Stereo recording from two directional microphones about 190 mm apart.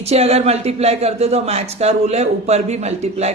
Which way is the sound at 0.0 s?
35° right (ahead or behind).